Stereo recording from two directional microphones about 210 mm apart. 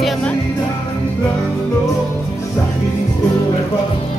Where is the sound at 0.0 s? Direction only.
Centre (ahead or behind).